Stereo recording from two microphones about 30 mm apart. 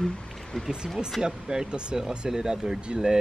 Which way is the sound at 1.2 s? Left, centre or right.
Right.